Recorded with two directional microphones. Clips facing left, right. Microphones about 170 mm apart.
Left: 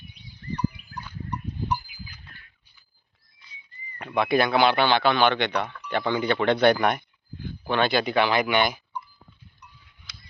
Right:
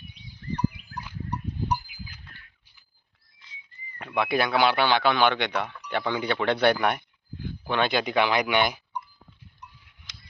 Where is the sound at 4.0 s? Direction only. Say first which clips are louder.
Left 3 dB; 5° right (ahead or behind).